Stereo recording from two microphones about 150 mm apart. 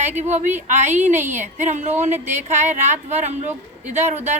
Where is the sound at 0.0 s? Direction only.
50° right (ahead or behind).